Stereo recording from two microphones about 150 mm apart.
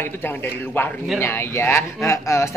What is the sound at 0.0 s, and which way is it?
A woman's voice, 15° left (ahead or behind).